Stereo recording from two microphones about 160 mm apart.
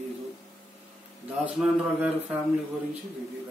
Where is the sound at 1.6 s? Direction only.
5° right (ahead or behind).